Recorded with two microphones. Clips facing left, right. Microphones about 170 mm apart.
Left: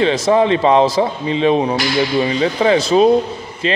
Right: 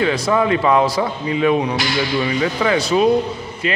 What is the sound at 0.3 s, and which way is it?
Speech, 25° left (ahead or behind).